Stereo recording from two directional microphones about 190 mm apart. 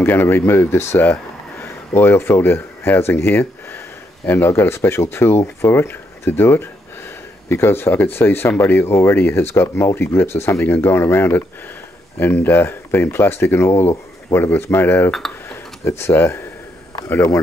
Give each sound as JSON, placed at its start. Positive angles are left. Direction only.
{"t": 0.0, "sound": "speech", "side_deg": 10}
{"t": 15.4, "sound": "a sound", "side_deg": 15}
{"t": 17.1, "sound": "speech", "side_deg": 15}